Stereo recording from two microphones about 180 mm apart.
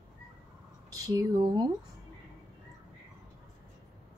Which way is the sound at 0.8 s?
20° right (ahead or behind).